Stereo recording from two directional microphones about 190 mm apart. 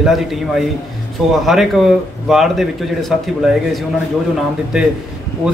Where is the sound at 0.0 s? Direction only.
Centre (ahead or behind).